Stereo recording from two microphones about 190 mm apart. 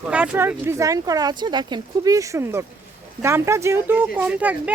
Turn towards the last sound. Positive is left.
turn(degrees=-10)  # may be behind; listen again after turning